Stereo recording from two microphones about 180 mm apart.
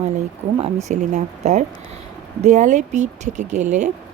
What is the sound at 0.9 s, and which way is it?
Speech, 40° right (ahead or behind).